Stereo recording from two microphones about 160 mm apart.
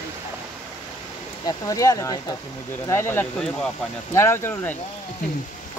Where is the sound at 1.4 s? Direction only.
20° left (ahead or behind).